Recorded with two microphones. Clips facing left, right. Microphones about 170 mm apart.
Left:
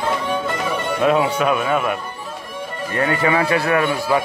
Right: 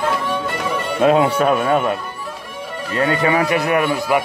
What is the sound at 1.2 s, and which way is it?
Speech, 45° right (ahead or behind).